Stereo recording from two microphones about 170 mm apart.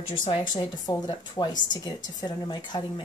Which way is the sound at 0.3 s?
25° left (ahead or behind).